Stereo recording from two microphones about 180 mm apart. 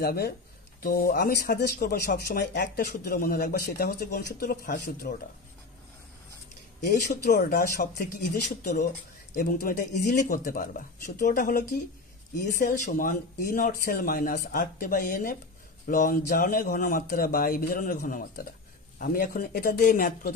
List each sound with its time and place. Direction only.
0.0 s a man's voice: 60° left (ahead or behind)
7.2 s a man's voice: 55° left (ahead or behind)